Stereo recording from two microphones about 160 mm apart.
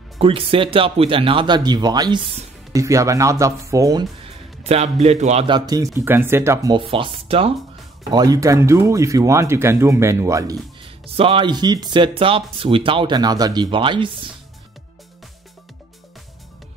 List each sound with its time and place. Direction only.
0.2 s speech: 35° right (ahead or behind); by 4.0 s 20° right (ahead or behind)
4.7 s speech: 40° right (ahead or behind)
5.5 s speech: 25° right (ahead or behind)
6.7 s speech: 30° right (ahead or behind)
8.1 s speech: 25° right (ahead or behind)
10.8 s speech: 35° right (ahead or behind)